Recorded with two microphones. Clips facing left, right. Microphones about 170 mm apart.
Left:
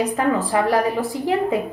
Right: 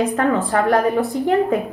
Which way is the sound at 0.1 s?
Centre (ahead or behind).